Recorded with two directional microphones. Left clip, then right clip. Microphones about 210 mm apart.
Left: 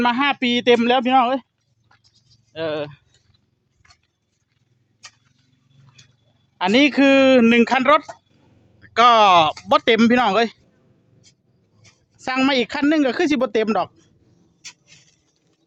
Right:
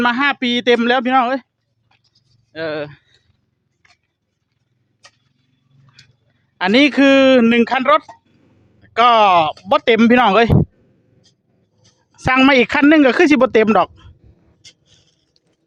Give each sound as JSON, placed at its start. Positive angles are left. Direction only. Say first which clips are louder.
{"t": 0.0, "sound": "speech", "louder": "right 3 dB", "side_deg": -10}
{"t": 1.9, "sound": "sheep", "louder": "left 1 dB", "side_deg": -5}
{"t": 2.5, "sound": "speech", "louder": "right 2 dB", "side_deg": -10}
{"t": 3.8, "sound": "a sound", "louder": "right 1 dB", "side_deg": -5}
{"t": 5.0, "sound": "tick-tock", "louder": "left 3 dB", "side_deg": 10}
{"t": 5.8, "sound": "a sound", "louder": "right 4 dB", "side_deg": -20}
{"t": 6.6, "sound": "speech", "louder": "right 3 dB", "side_deg": -15}
{"t": 12.1, "sound": "speech", "louder": "right 7 dB", "side_deg": -25}